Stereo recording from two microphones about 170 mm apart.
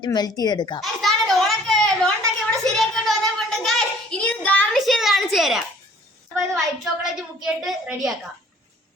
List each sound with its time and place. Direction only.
0.0 s a woman's voice: 25° left (ahead or behind)
0.8 s a sound: centre (ahead or behind)
7.0 s a woman's voice: centre (ahead or behind)